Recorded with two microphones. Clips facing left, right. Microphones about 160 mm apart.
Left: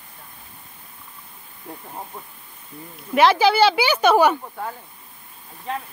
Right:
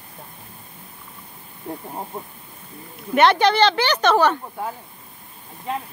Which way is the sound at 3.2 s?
Centre (ahead or behind).